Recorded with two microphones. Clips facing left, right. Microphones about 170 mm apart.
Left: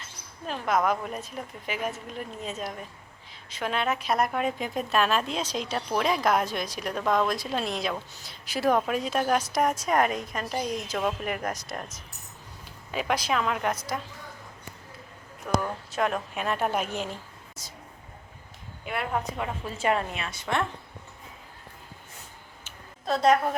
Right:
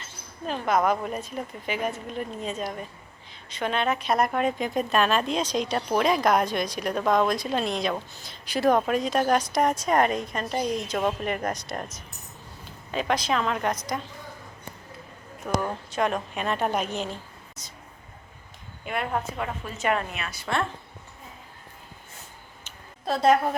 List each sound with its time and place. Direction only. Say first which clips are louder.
0.4 s a woman's voice: right 2 dB; centre (ahead or behind)
12.9 s a woman's voice: right 2 dB; 10° left (ahead or behind)
15.4 s speech: even; 10° right (ahead or behind)
15.9 s a woman's voice: right 1 dB; centre (ahead or behind)
18.9 s a woman's voice: right 1 dB; 5° left (ahead or behind)
19.6 s a woman's voice: left 1 dB; 30° left (ahead or behind)
23.0 s a woman's voice: right 1 dB; centre (ahead or behind)